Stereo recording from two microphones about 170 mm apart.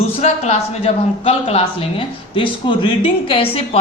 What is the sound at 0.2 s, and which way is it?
Speech, 45° left (ahead or behind).